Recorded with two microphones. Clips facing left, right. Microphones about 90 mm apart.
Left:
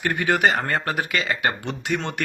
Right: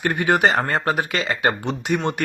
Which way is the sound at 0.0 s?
25° right (ahead or behind).